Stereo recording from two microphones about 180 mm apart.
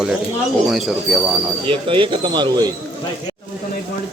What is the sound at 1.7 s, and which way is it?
Speech, 30° right (ahead or behind).